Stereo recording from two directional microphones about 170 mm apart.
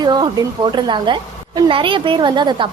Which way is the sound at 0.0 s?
25° right (ahead or behind).